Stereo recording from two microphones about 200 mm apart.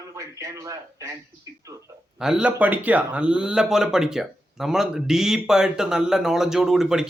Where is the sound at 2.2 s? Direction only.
5° right (ahead or behind).